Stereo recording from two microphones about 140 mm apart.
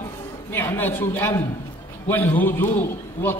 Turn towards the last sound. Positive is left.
turn(degrees=15)  # may be behind; listen again after turning